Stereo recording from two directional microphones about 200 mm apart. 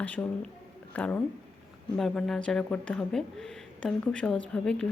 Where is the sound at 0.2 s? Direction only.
10° left (ahead or behind).